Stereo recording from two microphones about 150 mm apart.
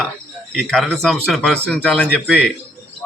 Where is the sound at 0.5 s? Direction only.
Centre (ahead or behind).